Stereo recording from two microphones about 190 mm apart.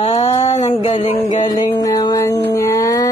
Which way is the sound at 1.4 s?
20° left (ahead or behind).